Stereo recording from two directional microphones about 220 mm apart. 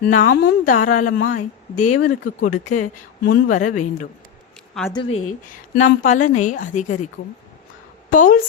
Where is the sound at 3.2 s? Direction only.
40° left (ahead or behind).